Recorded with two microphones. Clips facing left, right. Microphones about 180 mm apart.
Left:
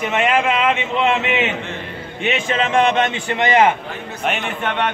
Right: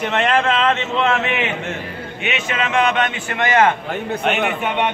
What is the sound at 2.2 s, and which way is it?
A man's voice, 30° left (ahead or behind).